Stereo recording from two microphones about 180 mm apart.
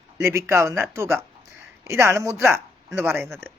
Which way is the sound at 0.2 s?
15° right (ahead or behind).